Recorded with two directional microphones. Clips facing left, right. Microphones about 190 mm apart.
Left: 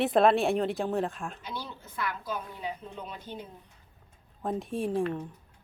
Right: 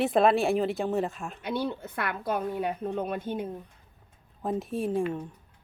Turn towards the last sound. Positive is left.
turn(degrees=0)  # may be behind; listen again after turning